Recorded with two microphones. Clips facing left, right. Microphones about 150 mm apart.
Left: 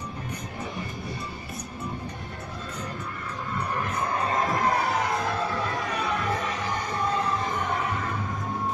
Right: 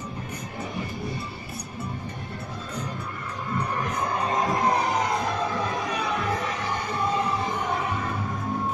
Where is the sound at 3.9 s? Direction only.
10° right (ahead or behind).